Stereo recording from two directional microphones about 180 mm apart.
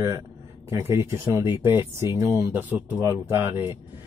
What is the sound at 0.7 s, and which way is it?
Speech, 15° right (ahead or behind).